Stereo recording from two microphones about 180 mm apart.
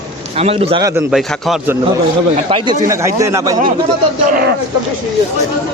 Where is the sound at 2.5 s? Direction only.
30° right (ahead or behind).